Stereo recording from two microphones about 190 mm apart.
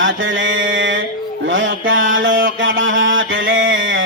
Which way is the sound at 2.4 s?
80° right.